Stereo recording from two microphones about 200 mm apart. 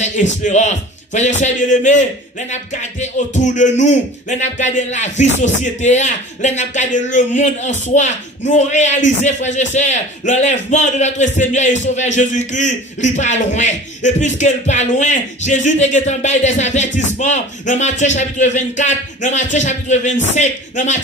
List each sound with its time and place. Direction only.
0.0 s a man's voice: 35° left (ahead or behind)